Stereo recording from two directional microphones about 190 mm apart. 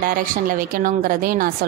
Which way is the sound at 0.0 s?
45° right (ahead or behind).